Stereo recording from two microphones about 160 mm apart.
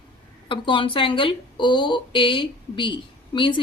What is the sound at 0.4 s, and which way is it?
A woman's voice, 30° left (ahead or behind).